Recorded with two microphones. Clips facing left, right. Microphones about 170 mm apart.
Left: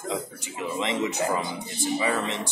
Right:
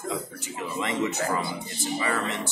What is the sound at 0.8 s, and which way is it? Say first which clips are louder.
A man's voice: left 1 dB; 20° left (ahead or behind).